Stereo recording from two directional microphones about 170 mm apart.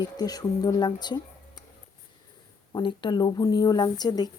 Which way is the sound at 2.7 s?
30° left (ahead or behind).